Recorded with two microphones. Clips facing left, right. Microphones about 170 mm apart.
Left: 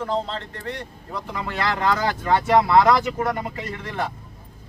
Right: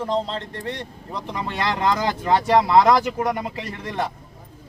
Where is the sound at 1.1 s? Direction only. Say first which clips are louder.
Right 1 dB; 20° right (ahead or behind).